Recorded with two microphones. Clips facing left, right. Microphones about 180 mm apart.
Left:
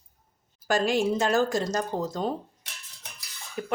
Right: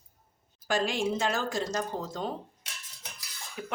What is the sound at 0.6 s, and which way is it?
Speech, 40° left (ahead or behind).